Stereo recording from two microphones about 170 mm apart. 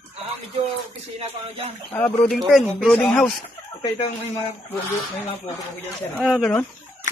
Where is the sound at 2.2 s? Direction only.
Centre (ahead or behind).